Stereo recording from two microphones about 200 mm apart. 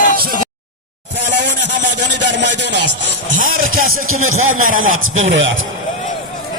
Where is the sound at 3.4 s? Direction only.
45° right (ahead or behind).